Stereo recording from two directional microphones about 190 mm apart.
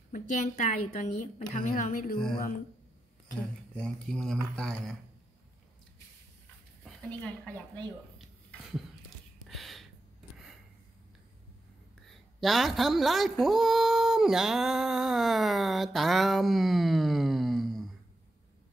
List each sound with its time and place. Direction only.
0.1 s a woman's voice: 40° left (ahead or behind)
3.3 s speech: 5° left (ahead or behind)
6.8 s a woman's voice: 5° left (ahead or behind)
8.2 s a sound: centre (ahead or behind)
12.1 s a woman's voice: centre (ahead or behind)